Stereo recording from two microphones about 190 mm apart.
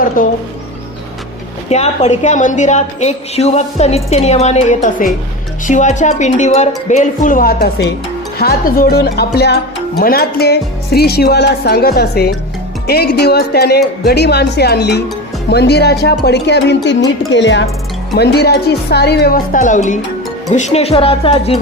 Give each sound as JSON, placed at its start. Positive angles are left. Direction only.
{"t": 0.2, "sound": "speech", "side_deg": 45}
{"t": 1.7, "sound": "a woman's voice", "side_deg": 35}
{"t": 18.2, "sound": "a woman's voice", "side_deg": 60}